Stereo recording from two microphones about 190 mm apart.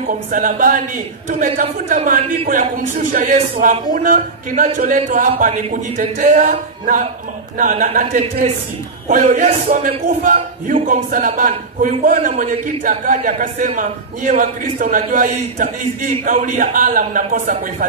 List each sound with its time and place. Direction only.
0.0 s a man's voice: 45° right (ahead or behind)